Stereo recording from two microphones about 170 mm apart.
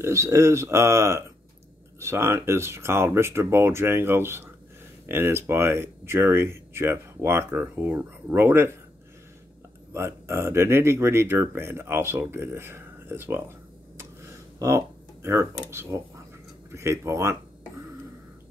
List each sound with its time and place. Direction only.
0.0 s speech: 15° right (ahead or behind)
9.9 s speech: 15° right (ahead or behind)
15.2 s speech: 15° right (ahead or behind)